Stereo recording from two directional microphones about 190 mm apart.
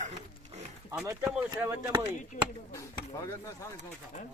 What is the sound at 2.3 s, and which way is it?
Speech, 40° left (ahead or behind).